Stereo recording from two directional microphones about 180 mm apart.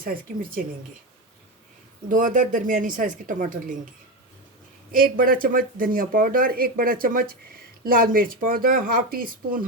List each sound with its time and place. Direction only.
0.0 s speech: 50° right (ahead or behind)
2.0 s speech: 45° right (ahead or behind)
4.9 s speech: 50° right (ahead or behind)